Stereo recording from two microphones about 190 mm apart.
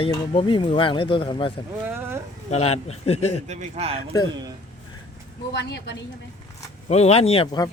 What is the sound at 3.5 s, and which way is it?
Speech, 35° right (ahead or behind).